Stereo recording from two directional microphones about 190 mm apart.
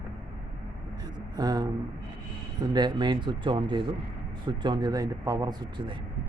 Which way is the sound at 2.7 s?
25° right (ahead or behind).